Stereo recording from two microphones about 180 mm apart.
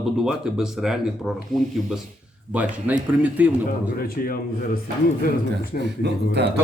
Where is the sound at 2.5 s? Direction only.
10° right (ahead or behind).